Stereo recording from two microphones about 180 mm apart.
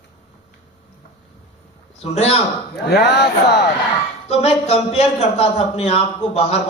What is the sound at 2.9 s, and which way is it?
Speech, 65° left (ahead or behind).